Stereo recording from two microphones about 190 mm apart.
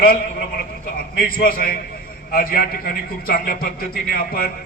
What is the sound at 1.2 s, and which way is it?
A man's voice, 50° left (ahead or behind).